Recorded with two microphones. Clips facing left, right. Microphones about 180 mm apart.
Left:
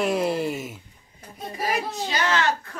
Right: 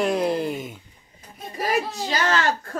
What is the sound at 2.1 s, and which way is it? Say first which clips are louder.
Speech: even; 45° right (ahead or behind).